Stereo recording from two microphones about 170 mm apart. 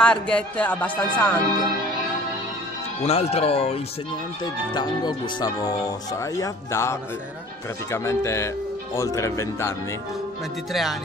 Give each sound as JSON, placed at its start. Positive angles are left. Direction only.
{"t": 0.0, "sound": "speech", "side_deg": 5}
{"t": 3.0, "sound": "speech", "side_deg": 40}
{"t": 4.7, "sound": "speech", "side_deg": 25}
{"t": 10.7, "sound": "speech", "side_deg": 0}